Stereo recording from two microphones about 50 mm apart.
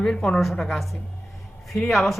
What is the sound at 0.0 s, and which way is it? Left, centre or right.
Speech, centre.